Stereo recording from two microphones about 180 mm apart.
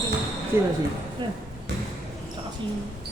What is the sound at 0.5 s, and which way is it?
Speech, 15° right (ahead or behind).